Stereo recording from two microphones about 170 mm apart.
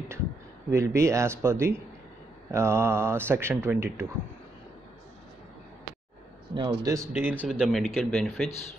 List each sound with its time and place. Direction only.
0.7 s speech: 15° right (ahead or behind)
6.5 s speech: 25° right (ahead or behind); by 8.5 s centre (ahead or behind)